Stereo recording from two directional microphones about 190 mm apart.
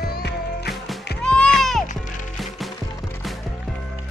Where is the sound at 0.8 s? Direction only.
5° left (ahead or behind).